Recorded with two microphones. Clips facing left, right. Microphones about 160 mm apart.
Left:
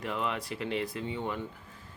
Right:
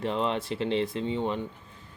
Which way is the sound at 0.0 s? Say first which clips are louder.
Right 5 dB; 30° right (ahead or behind).